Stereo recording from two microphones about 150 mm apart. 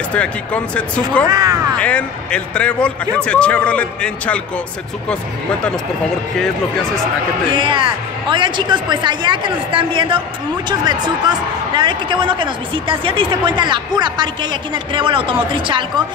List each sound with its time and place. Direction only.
0.1 s speech: 10° left (ahead or behind)
1.3 s speech: 25° right (ahead or behind)
1.8 s speech: 10° left (ahead or behind)
7.5 s speech: 35° right (ahead or behind)